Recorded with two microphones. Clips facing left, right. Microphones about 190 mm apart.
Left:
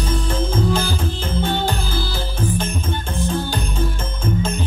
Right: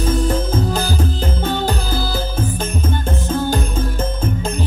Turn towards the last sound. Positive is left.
turn(degrees=-40)  # may be behind; listen again after turning